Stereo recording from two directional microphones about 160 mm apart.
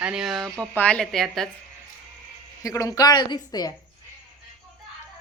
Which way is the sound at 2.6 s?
20° left (ahead or behind).